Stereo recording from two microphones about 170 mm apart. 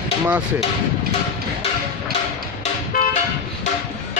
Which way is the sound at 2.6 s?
50° left (ahead or behind).